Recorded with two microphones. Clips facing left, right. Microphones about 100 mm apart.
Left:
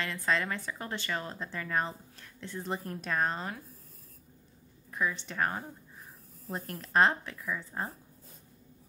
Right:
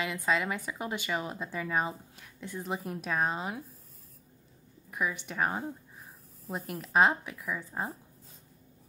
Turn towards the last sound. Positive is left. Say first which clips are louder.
# right 1 dB
turn(degrees=-10)  # may be behind; listen again after turning